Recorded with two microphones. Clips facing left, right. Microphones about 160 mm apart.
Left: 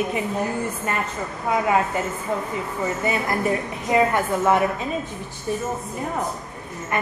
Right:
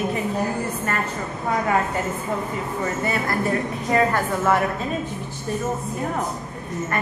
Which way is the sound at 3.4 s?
15° left (ahead or behind).